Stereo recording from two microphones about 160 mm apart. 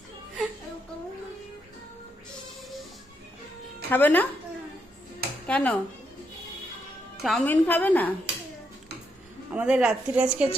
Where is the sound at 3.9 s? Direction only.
10° left (ahead or behind).